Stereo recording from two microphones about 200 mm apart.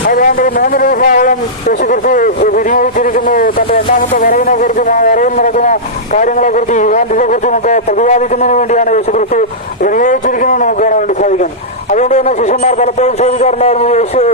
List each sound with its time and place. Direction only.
0.1 s a man's voice: 45° left (ahead or behind)